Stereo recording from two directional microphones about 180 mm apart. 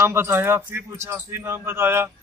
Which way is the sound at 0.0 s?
15° right (ahead or behind).